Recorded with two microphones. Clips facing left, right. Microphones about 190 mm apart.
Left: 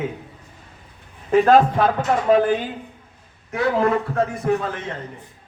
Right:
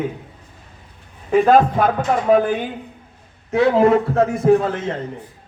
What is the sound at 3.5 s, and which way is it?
Speech, 25° right (ahead or behind).